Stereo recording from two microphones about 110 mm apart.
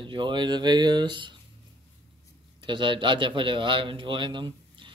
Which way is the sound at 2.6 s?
45° right (ahead or behind).